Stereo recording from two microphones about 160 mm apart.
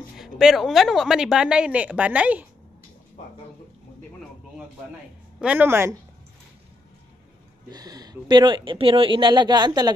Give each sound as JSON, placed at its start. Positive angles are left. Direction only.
{"t": 0.2, "sound": "a woman's voice", "side_deg": 0}
{"t": 5.4, "sound": "speech", "side_deg": -10}
{"t": 7.7, "sound": "speech", "side_deg": -25}